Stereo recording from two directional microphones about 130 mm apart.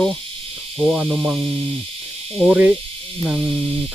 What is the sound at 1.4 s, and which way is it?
Speech, 45° right (ahead or behind).